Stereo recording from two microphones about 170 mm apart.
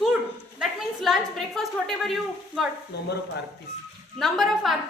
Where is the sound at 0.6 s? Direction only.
Centre (ahead or behind).